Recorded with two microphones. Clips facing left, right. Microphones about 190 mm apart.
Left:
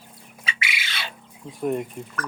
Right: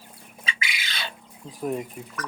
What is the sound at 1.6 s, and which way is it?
Speech, centre (ahead or behind).